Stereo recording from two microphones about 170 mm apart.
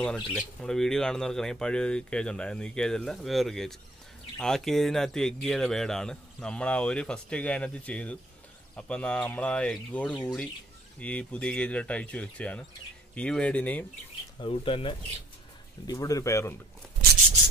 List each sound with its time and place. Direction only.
0.0 s speech: 5° left (ahead or behind)
14.4 s speech: 30° left (ahead or behind)
15.9 s speech: 20° left (ahead or behind)